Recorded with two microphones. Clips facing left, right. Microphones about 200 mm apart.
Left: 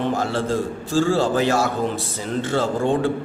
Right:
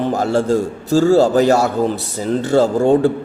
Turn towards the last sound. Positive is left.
turn(degrees=-40)  # may be behind; listen again after turning